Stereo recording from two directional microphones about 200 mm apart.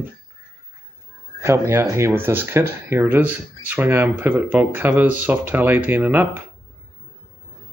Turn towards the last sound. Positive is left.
turn(degrees=-10)  # may be behind; listen again after turning